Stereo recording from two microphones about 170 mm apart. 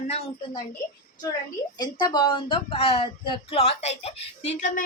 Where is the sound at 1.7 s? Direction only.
25° left (ahead or behind).